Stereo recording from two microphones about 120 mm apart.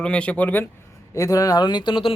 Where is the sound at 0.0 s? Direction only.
10° left (ahead or behind).